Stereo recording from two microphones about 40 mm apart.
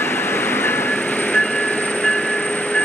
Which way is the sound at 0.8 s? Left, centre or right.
Left.